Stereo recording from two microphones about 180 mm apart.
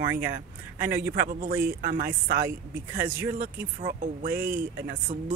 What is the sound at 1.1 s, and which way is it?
Speech, 55° right (ahead or behind).